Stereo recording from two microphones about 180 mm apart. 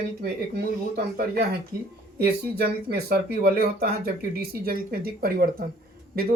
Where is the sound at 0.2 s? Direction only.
60° right (ahead or behind).